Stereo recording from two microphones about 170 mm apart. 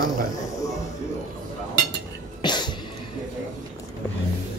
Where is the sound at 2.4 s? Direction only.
25° left (ahead or behind).